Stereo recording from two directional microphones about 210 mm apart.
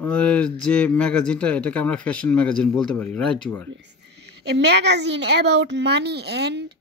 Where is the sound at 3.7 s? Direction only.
55° right (ahead or behind).